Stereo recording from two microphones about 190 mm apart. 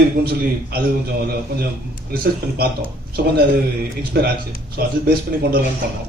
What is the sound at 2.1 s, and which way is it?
Speech, 55° right (ahead or behind).